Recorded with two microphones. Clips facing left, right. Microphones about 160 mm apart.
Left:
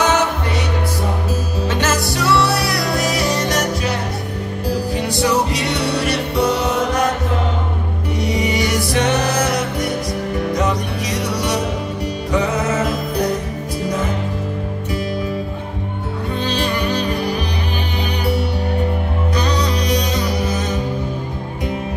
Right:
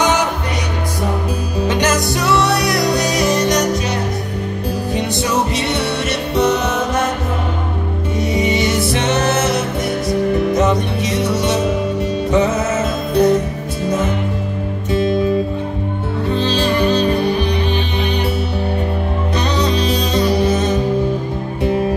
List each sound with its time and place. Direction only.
1.6 s music: 15° right (ahead or behind)
4.9 s music: 20° right (ahead or behind)
8.2 s music: 25° right (ahead or behind)
14.9 s music: 25° right (ahead or behind)
16.3 s music: 25° right (ahead or behind)
19.3 s music: 25° right (ahead or behind)